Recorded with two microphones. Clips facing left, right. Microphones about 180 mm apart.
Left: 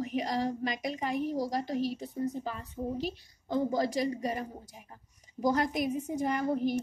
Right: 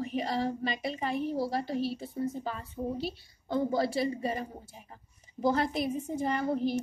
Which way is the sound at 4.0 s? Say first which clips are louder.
Even; 10° left (ahead or behind).